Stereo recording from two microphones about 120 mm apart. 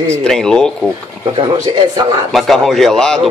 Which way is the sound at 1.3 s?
40° right (ahead or behind).